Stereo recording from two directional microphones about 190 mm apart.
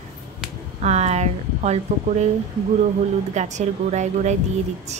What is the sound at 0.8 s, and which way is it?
A woman's voice, 35° right (ahead or behind).